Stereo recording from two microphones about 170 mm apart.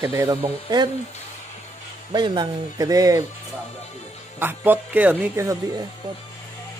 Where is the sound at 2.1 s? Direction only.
25° right (ahead or behind).